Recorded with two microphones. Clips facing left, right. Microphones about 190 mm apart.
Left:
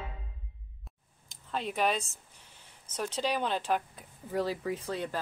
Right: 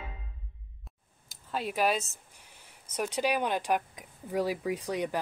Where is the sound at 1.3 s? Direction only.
5° right (ahead or behind).